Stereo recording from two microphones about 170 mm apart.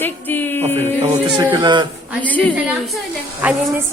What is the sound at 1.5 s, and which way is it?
Speech, 25° right (ahead or behind).